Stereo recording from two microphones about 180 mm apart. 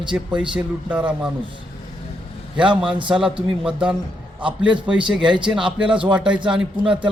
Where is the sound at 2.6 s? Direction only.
25° right (ahead or behind).